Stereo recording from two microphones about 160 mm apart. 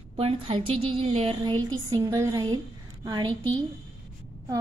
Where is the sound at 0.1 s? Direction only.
35° right (ahead or behind).